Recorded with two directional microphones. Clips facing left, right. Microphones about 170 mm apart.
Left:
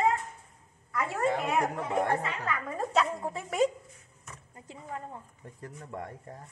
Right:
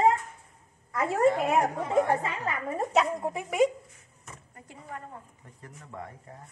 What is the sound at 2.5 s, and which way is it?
Speech, 20° right (ahead or behind).